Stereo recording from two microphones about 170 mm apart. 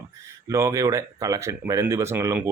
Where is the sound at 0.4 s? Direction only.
20° right (ahead or behind).